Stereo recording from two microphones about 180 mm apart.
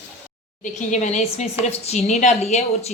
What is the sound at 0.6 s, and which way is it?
A woman's voice, 45° left (ahead or behind).